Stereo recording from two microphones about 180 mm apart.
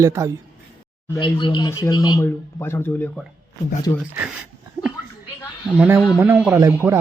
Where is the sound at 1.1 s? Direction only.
25° left (ahead or behind).